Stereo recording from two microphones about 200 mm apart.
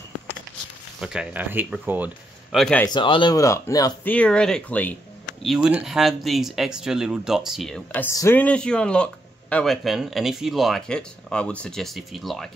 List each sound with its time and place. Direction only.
1.0 s speech: 5° right (ahead or behind)
2.8 s speech: 25° left (ahead or behind)
4.1 s speech: 5° left (ahead or behind)